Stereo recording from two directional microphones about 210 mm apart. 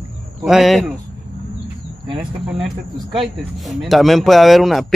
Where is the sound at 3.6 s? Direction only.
Centre (ahead or behind).